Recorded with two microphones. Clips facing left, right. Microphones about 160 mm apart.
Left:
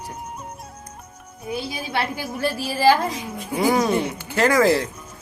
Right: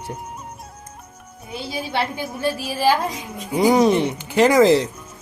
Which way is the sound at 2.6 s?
15° right (ahead or behind).